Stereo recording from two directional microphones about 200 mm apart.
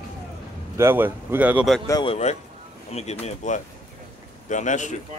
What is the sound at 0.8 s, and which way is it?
Speech, 10° right (ahead or behind).